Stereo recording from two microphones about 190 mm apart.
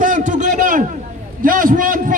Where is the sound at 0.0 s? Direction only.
45° right (ahead or behind).